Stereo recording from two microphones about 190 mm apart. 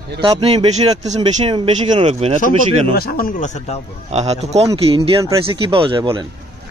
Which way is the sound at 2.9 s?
50° left (ahead or behind).